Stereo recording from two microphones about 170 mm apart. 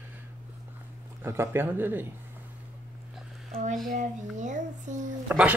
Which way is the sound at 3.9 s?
45° right (ahead or behind).